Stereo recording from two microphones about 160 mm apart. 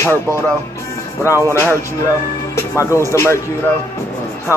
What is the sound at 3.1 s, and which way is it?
Speech, 15° left (ahead or behind).